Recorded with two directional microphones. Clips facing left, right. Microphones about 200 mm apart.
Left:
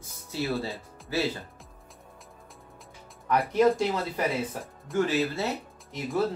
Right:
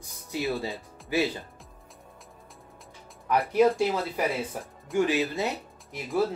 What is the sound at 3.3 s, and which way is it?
Speech, 10° right (ahead or behind).